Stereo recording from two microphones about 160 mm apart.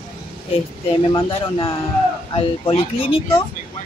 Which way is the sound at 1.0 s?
30° left (ahead or behind).